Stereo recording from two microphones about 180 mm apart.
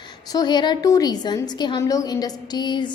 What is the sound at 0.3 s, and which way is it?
A woman's voice, 20° left (ahead or behind).